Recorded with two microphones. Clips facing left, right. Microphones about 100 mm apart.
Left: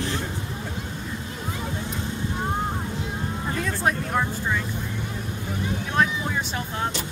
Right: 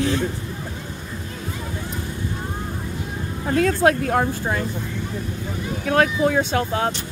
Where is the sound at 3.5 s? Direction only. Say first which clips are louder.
Right 9 dB; 90° right.